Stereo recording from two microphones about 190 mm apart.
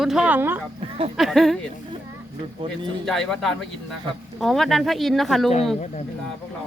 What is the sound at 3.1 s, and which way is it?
Speech, centre (ahead or behind).